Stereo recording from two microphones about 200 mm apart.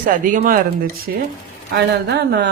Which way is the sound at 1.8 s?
55° right (ahead or behind).